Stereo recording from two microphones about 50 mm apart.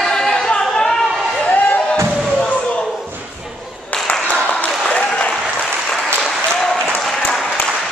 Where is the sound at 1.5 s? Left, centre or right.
Left.